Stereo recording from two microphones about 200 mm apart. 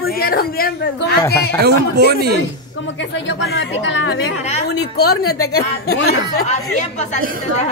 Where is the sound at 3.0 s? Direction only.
65° left (ahead or behind).